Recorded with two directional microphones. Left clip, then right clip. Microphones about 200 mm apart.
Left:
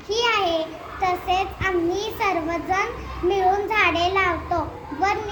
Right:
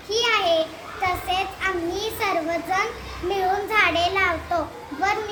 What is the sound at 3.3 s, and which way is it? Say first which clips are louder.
A child's voice: left 2 dB; 15° right (ahead or behind).